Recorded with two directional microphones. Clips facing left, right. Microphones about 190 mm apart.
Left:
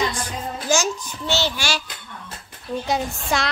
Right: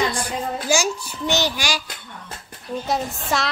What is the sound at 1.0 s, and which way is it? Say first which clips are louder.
Speech: right 2 dB; 15° right (ahead or behind).